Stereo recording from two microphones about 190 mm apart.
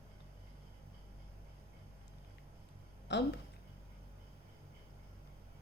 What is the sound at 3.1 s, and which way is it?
Speech, 65° left (ahead or behind).